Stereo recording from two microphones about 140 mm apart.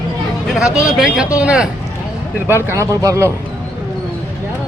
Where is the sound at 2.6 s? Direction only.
20° right (ahead or behind).